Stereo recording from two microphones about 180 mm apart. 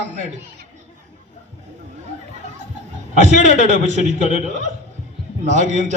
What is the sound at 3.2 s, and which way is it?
A man's voice, 40° left (ahead or behind).